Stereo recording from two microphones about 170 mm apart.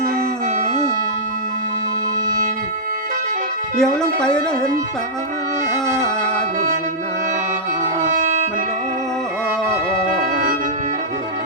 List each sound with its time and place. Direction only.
3.8 s speech: 5° left (ahead or behind)
8.1 s music: 45° right (ahead or behind)